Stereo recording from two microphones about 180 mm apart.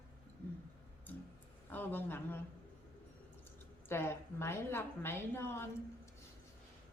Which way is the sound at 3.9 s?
15° left (ahead or behind).